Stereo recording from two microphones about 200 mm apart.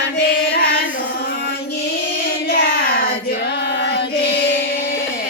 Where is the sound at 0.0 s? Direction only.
55° left (ahead or behind).